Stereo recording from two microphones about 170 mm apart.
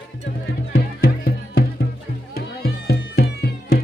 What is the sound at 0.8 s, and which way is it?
Music, 60° left (ahead or behind).